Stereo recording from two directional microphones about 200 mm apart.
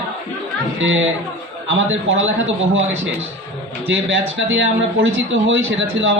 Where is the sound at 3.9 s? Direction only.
70° right (ahead or behind).